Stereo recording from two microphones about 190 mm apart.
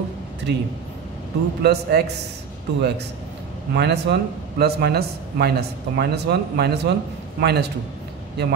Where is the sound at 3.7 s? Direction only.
60° right (ahead or behind).